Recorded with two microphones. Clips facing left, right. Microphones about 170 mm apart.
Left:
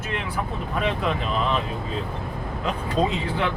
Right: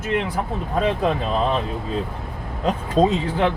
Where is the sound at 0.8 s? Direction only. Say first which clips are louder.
Right 5 dB; 35° right (ahead or behind).